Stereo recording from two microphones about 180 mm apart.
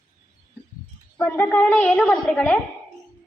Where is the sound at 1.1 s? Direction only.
15° left (ahead or behind).